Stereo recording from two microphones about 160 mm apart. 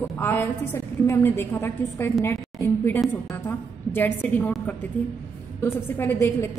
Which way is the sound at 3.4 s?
10° left (ahead or behind).